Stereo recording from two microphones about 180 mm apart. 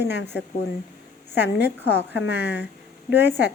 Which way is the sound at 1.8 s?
70° left (ahead or behind).